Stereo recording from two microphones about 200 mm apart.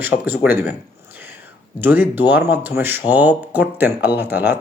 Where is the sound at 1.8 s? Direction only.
10° right (ahead or behind).